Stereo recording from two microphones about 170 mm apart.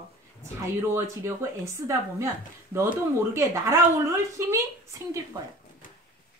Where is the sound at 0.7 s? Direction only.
15° right (ahead or behind).